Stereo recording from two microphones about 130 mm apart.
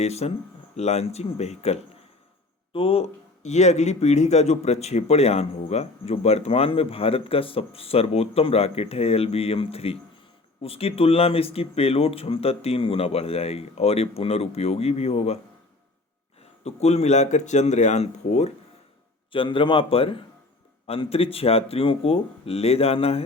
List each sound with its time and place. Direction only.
0.0 s speech: 55° left (ahead or behind)
16.6 s speech: 55° left (ahead or behind)
19.3 s a man's voice: 40° left (ahead or behind)